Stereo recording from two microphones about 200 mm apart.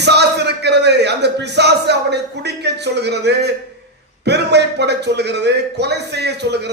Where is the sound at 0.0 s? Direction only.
55° right (ahead or behind).